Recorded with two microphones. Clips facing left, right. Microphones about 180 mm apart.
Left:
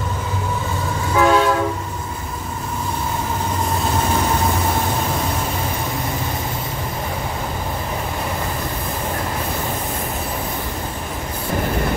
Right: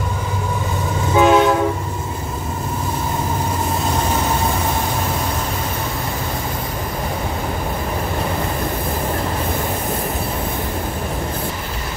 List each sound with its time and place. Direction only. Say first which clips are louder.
1.1 s train: right 3 dB; 20° right (ahead or behind)